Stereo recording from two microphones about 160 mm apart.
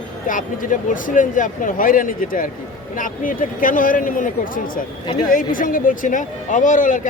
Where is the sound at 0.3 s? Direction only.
55° left (ahead or behind).